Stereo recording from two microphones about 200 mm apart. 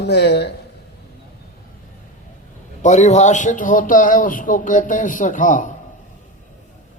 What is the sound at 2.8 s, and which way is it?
Speech, 35° left (ahead or behind).